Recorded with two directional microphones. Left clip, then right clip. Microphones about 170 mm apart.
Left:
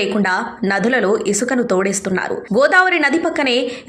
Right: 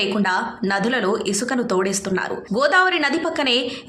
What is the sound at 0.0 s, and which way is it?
A woman's voice, 15° left (ahead or behind).